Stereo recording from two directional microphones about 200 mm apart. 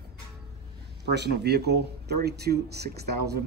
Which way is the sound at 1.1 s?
55° right (ahead or behind).